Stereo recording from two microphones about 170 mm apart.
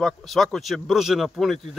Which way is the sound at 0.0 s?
Centre (ahead or behind).